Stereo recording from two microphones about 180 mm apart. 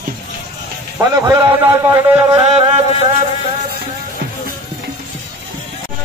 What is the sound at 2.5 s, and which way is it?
Music, 35° right (ahead or behind).